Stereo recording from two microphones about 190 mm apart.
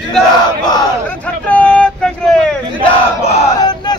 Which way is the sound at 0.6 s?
20° left (ahead or behind).